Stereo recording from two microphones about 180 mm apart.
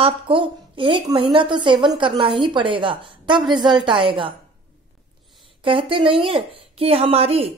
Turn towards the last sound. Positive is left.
turn(degrees=-35)  # may be behind; listen again after turning